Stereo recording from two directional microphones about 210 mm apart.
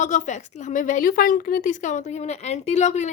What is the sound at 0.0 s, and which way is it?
A woman's voice, 35° left (ahead or behind).